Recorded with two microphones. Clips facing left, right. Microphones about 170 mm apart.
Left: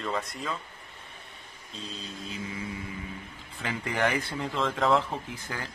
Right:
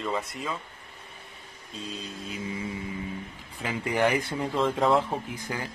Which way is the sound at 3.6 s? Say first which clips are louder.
Right 3 dB; 10° right (ahead or behind).